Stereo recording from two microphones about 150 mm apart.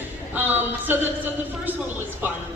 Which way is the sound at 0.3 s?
15° right (ahead or behind).